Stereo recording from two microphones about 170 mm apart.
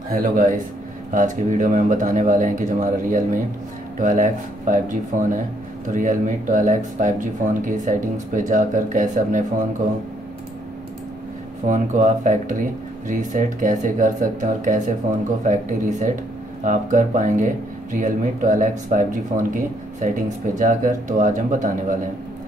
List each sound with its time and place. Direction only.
0.1 s speech: 50° right (ahead or behind)
11.6 s speech: 45° right (ahead or behind)